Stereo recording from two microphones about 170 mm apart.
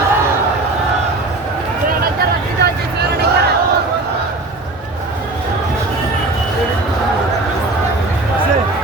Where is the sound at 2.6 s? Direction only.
90° right.